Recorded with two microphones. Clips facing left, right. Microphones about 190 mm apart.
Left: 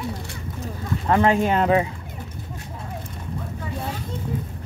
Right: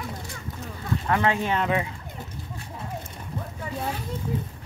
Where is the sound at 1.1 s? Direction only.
35° left (ahead or behind).